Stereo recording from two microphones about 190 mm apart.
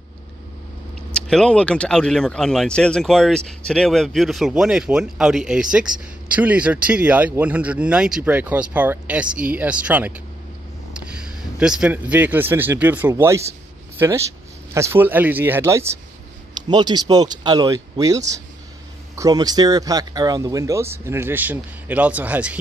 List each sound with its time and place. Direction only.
1.1 s speech: 5° left (ahead or behind)